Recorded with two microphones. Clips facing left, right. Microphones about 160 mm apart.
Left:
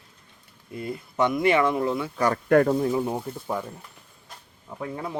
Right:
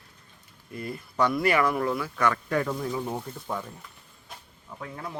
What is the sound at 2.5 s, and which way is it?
Speech, 55° left (ahead or behind).